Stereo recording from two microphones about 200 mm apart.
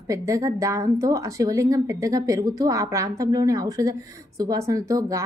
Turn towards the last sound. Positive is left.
turn(degrees=-15)  # may be behind; listen again after turning